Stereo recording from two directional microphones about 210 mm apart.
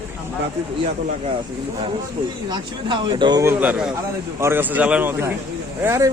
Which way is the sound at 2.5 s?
20° right (ahead or behind).